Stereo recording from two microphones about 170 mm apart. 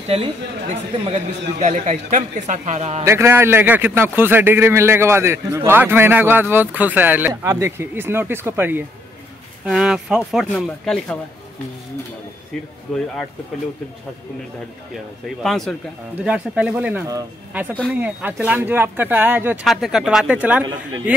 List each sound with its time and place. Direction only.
0.1 s speech: 35° right (ahead or behind)
3.1 s a man's voice: 15° right (ahead or behind)
12.9 s speech: 5° left (ahead or behind)
15.2 s a man's voice: centre (ahead or behind)